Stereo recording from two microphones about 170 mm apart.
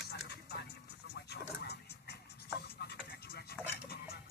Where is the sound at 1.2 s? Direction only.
75° left (ahead or behind).